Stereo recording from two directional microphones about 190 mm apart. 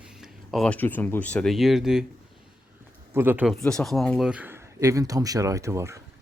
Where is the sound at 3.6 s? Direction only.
5° left (ahead or behind).